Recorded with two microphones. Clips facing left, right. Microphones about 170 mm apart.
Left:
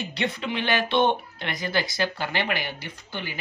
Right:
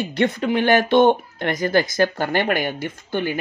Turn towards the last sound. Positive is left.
turn(degrees=-50)  # may be behind; listen again after turning